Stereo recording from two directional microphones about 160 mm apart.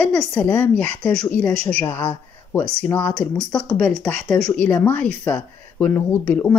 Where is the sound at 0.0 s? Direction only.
5° left (ahead or behind).